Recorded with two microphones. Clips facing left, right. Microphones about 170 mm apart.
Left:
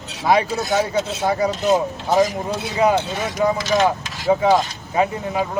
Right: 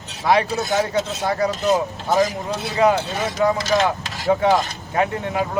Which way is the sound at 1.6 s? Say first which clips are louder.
Left 2 dB; centre (ahead or behind).